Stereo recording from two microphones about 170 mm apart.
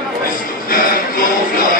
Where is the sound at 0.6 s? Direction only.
55° left (ahead or behind).